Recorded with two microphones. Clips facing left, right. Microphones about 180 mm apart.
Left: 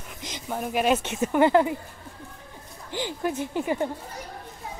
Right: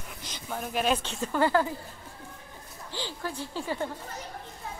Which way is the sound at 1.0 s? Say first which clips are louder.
Left 6 dB; 20° left (ahead or behind).